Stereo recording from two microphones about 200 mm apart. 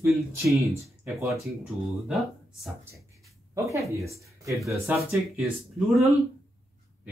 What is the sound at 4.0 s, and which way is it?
Mantra, 15° right (ahead or behind).